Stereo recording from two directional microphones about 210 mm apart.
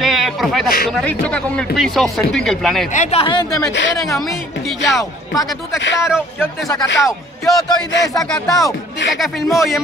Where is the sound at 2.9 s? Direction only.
35° left (ahead or behind).